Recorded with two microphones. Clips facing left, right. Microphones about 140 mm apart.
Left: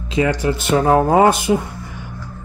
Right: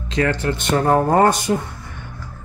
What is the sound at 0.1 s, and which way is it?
Speech, 10° left (ahead or behind).